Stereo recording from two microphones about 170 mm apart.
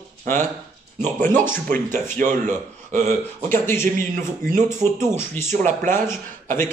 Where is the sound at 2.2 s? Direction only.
45° right (ahead or behind).